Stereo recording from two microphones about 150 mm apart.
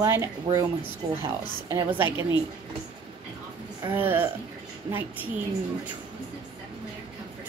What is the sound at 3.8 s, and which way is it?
Speech, 15° right (ahead or behind).